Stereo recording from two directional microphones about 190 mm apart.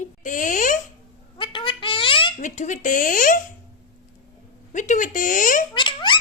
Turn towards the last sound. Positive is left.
turn(degrees=25)  # may be behind; listen again after turning